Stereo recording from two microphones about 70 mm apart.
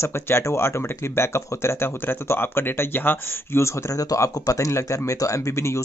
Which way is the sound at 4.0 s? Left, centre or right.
Left.